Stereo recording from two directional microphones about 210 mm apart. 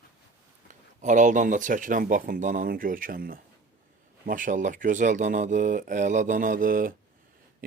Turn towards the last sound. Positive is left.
turn(degrees=-40)  # may be behind; listen again after turning